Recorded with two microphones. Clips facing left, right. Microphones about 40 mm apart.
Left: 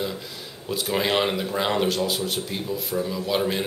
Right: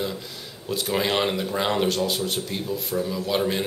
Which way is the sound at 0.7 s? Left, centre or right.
Centre.